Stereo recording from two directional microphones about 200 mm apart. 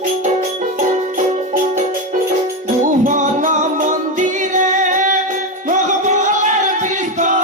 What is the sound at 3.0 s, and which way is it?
Music, 40° right (ahead or behind).